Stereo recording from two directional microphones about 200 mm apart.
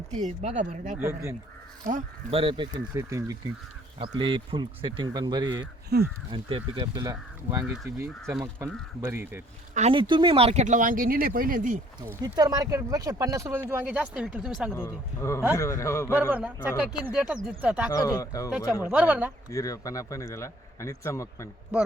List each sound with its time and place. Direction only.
0.1 s speech: 35° right (ahead or behind)
0.9 s speech: 15° right (ahead or behind)
1.8 s speech: 40° right (ahead or behind)
2.3 s speech: 25° right (ahead or behind)
5.9 s speech: 55° right (ahead or behind)
6.3 s speech: 25° right (ahead or behind)
8.0 s speech: 5° right (ahead or behind)
9.7 s speech: 30° right (ahead or behind)
12.0 s speech: 20° right (ahead or behind)
14.7 s speech: 10° left (ahead or behind)
16.3 s speech: 5° right (ahead or behind)
17.9 s speech: 15° left (ahead or behind)
18.5 s speech: 5° right (ahead or behind)
19.5 s speech: 15° left (ahead or behind)